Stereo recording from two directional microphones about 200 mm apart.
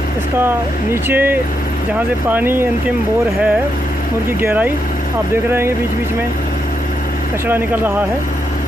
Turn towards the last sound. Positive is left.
turn(degrees=-10)  # may be behind; listen again after turning